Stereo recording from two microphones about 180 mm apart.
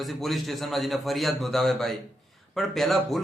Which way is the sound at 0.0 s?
Centre (ahead or behind).